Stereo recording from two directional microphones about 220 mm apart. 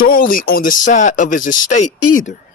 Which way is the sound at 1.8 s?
90° left.